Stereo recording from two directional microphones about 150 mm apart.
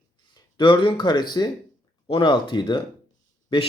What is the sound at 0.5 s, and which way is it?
Speech, 30° left (ahead or behind).